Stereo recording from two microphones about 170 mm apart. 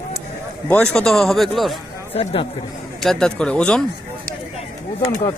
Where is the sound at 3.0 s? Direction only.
5° left (ahead or behind).